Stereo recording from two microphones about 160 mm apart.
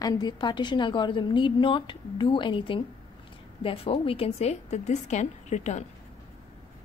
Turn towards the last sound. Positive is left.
turn(degrees=45)  # may be behind; listen again after turning